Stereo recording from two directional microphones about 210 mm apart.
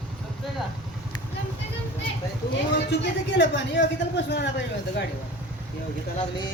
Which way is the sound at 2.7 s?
60° left (ahead or behind).